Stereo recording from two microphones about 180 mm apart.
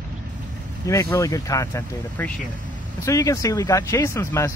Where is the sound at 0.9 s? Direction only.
15° left (ahead or behind).